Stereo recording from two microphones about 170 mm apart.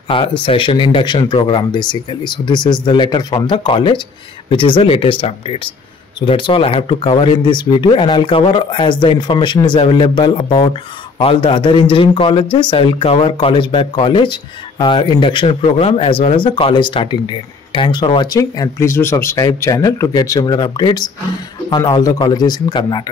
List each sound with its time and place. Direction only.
0.1 s speech: 30° left (ahead or behind)